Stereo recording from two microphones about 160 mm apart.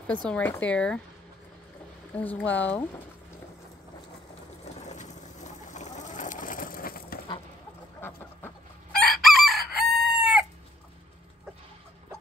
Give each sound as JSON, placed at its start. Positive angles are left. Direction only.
{"t": 0.3, "sound": "speech", "side_deg": 10}
{"t": 2.1, "sound": "speech", "side_deg": 10}
{"t": 4.8, "sound": "a sound", "side_deg": 50}
{"t": 8.9, "sound": "chicken", "side_deg": 0}